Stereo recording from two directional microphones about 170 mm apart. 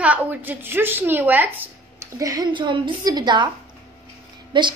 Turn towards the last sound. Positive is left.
turn(degrees=-25)  # may be behind; listen again after turning